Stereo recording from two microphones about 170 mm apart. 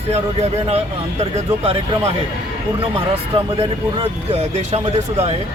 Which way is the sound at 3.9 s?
35° right (ahead or behind).